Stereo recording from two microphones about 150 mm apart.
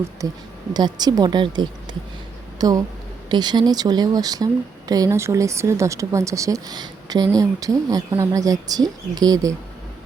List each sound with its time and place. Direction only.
0.2 s speech: 20° right (ahead or behind)